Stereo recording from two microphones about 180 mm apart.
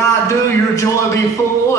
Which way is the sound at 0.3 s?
15° left (ahead or behind).